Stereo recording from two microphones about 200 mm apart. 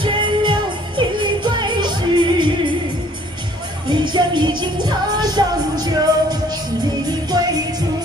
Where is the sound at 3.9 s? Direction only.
20° right (ahead or behind).